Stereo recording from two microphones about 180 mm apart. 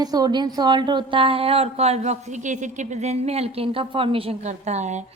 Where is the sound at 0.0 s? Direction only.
20° right (ahead or behind).